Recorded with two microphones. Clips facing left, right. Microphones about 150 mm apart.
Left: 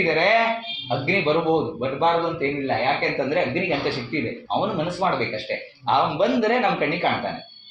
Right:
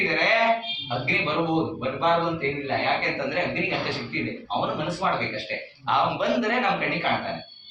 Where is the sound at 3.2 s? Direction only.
35° left (ahead or behind).